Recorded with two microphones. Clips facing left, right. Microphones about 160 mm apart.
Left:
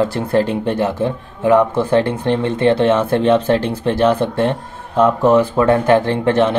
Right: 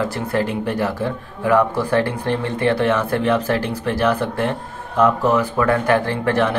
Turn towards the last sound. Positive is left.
turn(degrees=25)  # may be behind; listen again after turning